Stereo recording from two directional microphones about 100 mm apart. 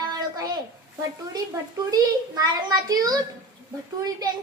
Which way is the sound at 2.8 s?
40° right (ahead or behind).